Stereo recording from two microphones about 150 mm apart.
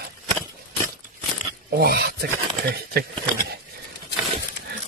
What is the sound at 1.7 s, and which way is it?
Speech, 90° right.